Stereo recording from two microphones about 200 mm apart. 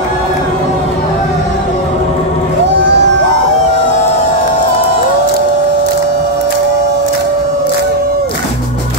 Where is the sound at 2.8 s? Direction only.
60° right (ahead or behind).